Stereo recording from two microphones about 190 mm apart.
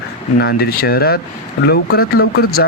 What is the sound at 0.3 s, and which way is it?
Speech, 55° left (ahead or behind).